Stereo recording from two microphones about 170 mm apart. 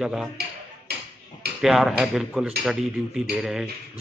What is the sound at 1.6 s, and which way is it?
Speech, centre (ahead or behind).